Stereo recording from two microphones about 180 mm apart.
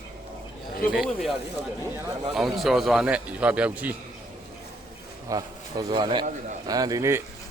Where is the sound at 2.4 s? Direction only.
Centre (ahead or behind).